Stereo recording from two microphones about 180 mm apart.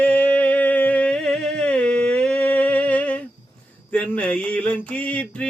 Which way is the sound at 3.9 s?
5° left (ahead or behind).